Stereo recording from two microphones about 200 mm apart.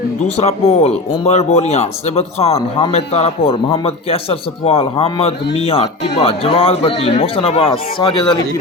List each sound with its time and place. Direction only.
0.2 s speech: 30° left (ahead or behind)